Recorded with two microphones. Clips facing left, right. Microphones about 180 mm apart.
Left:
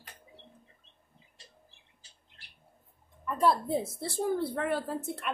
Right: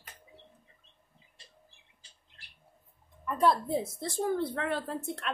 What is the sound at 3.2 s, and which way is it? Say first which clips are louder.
Speech: even; centre (ahead or behind).